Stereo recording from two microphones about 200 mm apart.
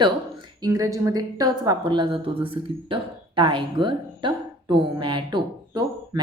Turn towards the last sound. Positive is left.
turn(degrees=-20)  # may be behind; listen again after turning